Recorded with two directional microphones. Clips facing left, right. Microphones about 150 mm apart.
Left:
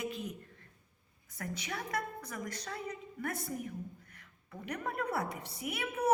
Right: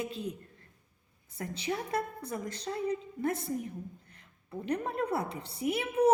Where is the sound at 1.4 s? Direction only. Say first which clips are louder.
Right 6 dB; 25° right (ahead or behind).